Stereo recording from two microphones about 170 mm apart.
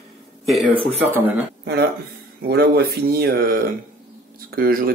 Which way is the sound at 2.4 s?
65° right (ahead or behind).